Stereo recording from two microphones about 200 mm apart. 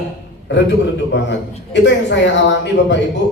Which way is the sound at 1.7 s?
65° left (ahead or behind).